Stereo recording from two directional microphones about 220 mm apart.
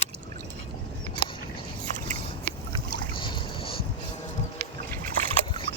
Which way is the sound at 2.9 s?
20° left (ahead or behind).